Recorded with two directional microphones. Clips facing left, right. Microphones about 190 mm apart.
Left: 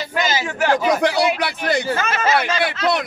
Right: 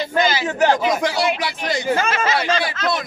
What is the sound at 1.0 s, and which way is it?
Speech, 60° left (ahead or behind).